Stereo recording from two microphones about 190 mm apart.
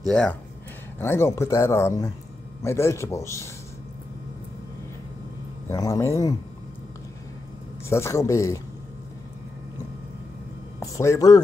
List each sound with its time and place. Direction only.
0.0 s speech: 5° left (ahead or behind)
5.7 s speech: 15° left (ahead or behind)
7.9 s speech: 15° left (ahead or behind)
10.8 s speech: 15° left (ahead or behind)